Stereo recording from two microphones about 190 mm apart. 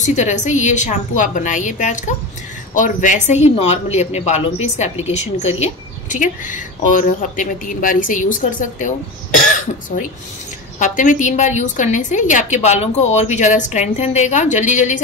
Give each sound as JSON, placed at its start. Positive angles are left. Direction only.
{"t": 0.0, "sound": "a woman's voice", "side_deg": 40}